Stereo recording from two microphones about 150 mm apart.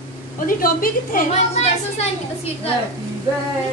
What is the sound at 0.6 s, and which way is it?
Speech, 70° left (ahead or behind).